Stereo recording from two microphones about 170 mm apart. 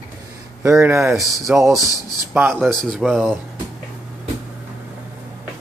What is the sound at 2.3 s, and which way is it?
Speech, 15° right (ahead or behind).